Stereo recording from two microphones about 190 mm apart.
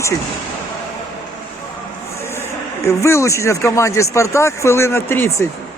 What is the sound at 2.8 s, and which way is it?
Speech, 15° left (ahead or behind).